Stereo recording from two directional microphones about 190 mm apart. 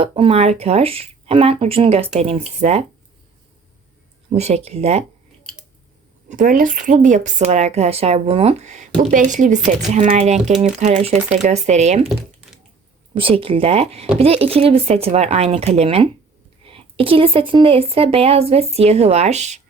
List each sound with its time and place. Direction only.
0.0 s speech: 30° right (ahead or behind)
4.3 s speech: 35° right (ahead or behind)
5.4 s scissors: 5° left (ahead or behind)
6.2 s speech: 45° right (ahead or behind)
13.1 s speech: 30° right (ahead or behind)